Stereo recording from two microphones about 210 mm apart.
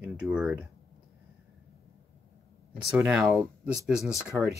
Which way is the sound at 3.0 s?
Centre (ahead or behind).